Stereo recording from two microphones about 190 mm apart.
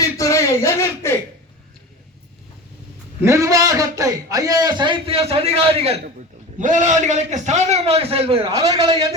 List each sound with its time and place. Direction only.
0.0 s speech: 15° left (ahead or behind)
3.2 s a man's voice: 15° right (ahead or behind)
8.5 s a man's voice: 20° right (ahead or behind)